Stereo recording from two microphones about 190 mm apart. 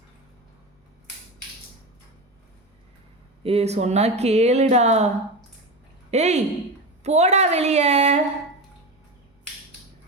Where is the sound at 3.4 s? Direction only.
30° right (ahead or behind).